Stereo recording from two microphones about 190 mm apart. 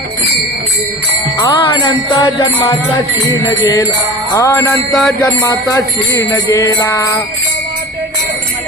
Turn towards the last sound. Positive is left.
turn(degrees=15)  # may be behind; listen again after turning